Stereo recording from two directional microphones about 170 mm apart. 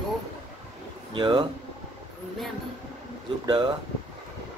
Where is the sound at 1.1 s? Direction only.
25° right (ahead or behind).